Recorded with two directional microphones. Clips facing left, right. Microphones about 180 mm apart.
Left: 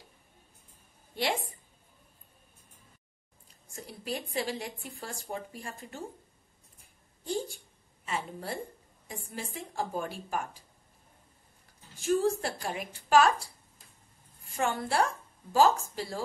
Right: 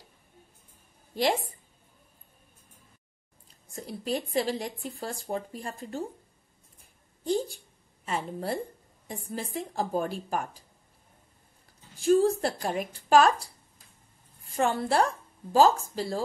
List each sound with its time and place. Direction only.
1.1 s a woman's voice: 40° right (ahead or behind)
3.7 s speech: 35° right (ahead or behind)
8.0 s speech: 40° right (ahead or behind)
12.0 s speech: 35° right (ahead or behind)
14.5 s speech: 35° right (ahead or behind)